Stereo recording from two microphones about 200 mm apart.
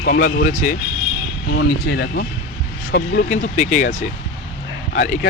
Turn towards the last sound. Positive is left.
turn(degrees=40)  # may be behind; listen again after turning